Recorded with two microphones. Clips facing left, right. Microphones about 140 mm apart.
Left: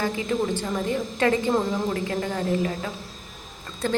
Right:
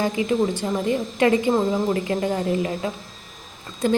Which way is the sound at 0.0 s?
15° right (ahead or behind).